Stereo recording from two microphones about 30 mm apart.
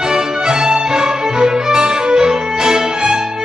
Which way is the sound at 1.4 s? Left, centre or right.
Right.